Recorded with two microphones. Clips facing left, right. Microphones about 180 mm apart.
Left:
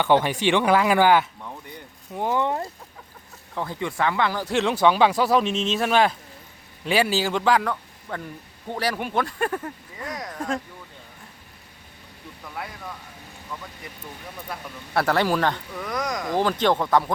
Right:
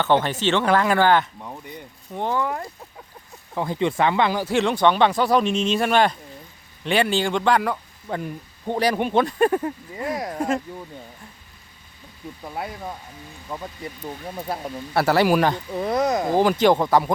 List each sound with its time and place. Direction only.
0.0 s speech: 10° left (ahead or behind)
2.3 s speech: 25° left (ahead or behind)
3.5 s speech: 15° right (ahead or behind)
4.4 s speech: centre (ahead or behind)
7.7 s speech: 20° right (ahead or behind)
13.5 s speech: 35° right (ahead or behind)
14.9 s speech: 5° right (ahead or behind)
15.7 s speech: 30° right (ahead or behind)
16.4 s speech: 10° right (ahead or behind)